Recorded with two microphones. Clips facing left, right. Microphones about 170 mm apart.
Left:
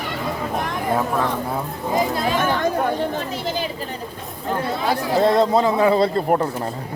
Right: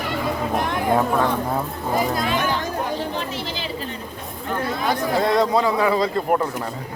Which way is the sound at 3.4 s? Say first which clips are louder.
Left 5 dB; 45° left (ahead or behind).